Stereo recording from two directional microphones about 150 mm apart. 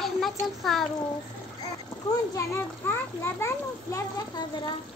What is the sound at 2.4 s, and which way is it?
A child's voice, 15° left (ahead or behind).